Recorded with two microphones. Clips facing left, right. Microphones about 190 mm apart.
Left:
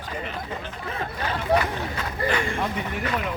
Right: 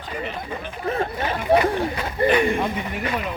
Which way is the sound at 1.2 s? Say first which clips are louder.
Right 4 dB; 20° right (ahead or behind).